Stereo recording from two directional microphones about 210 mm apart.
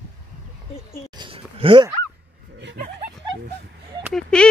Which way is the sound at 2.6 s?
45° right (ahead or behind).